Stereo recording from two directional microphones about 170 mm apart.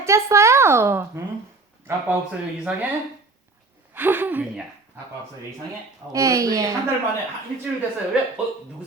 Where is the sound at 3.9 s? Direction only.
10° right (ahead or behind).